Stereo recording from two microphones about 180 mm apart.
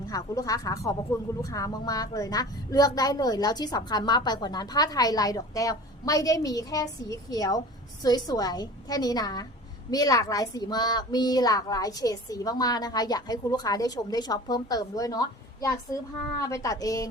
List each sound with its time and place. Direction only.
0.1 s a woman's voice: 20° left (ahead or behind)